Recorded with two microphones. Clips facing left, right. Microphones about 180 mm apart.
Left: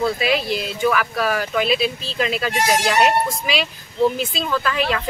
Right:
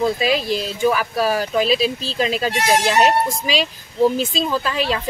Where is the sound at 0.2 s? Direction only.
40° right (ahead or behind).